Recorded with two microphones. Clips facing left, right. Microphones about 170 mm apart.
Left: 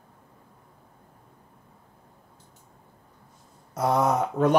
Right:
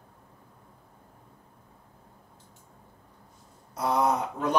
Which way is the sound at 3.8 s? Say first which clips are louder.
Left 3 dB; 45° left (ahead or behind).